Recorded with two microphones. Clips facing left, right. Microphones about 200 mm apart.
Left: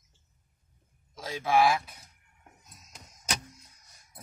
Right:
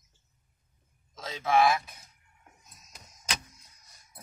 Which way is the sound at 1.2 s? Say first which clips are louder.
Even; 10° left (ahead or behind).